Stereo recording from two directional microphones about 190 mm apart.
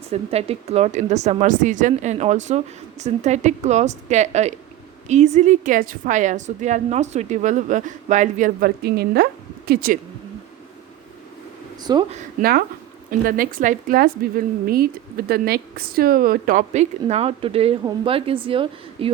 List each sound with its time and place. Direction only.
0.1 s a woman's voice: 30° right (ahead or behind); by 10.0 s 50° right (ahead or behind)
11.8 s a woman's voice: 20° right (ahead or behind)
12.1 s a woman's voice: 50° right (ahead or behind); by 19.1 s 30° right (ahead or behind)